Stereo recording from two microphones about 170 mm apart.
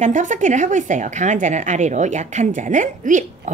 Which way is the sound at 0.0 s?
45° right (ahead or behind).